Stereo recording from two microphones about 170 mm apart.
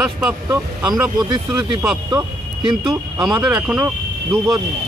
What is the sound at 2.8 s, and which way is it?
Speech, 5° right (ahead or behind).